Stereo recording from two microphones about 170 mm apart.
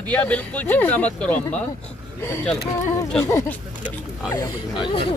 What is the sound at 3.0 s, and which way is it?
Speech, 15° left (ahead or behind).